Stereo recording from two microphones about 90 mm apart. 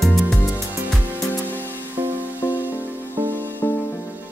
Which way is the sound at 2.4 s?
25° left (ahead or behind).